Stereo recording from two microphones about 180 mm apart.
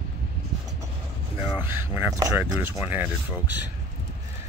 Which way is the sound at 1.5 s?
10° right (ahead or behind).